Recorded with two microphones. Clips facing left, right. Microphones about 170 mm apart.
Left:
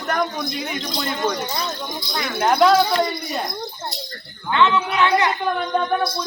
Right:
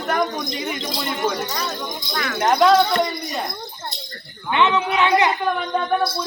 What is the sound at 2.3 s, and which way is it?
Speech, centre (ahead or behind).